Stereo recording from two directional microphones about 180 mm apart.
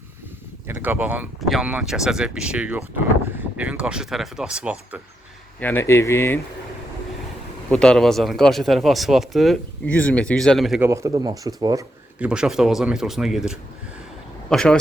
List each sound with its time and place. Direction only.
0.7 s speech: 10° right (ahead or behind)
5.5 s speech: 10° left (ahead or behind)
7.7 s speech: 5° left (ahead or behind)
10.8 s speech: 15° right (ahead or behind)
12.2 s speech: 5° right (ahead or behind)